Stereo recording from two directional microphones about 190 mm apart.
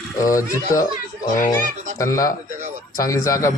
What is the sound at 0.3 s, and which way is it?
A man's voice, 15° left (ahead or behind).